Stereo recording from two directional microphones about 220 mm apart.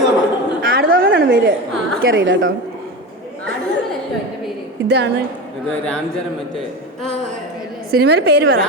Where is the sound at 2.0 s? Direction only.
60° right (ahead or behind).